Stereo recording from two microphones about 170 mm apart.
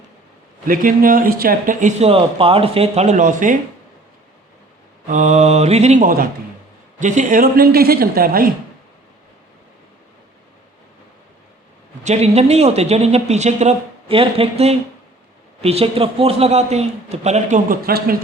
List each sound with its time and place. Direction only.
0.7 s speech: 55° right (ahead or behind)
5.0 s a woman's voice: 45° right (ahead or behind)
12.0 s speech: 40° right (ahead or behind); by 18.2 s 60° right (ahead or behind)